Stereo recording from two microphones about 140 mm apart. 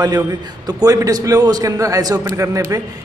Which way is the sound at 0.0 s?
30° right (ahead or behind).